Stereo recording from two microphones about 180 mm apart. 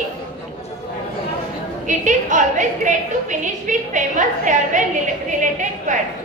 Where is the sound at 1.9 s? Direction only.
45° right (ahead or behind).